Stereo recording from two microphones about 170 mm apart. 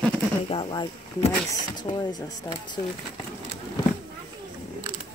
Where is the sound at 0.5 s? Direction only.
30° left (ahead or behind).